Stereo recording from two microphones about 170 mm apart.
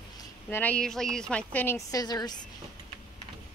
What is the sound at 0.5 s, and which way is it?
A woman's voice, 10° left (ahead or behind).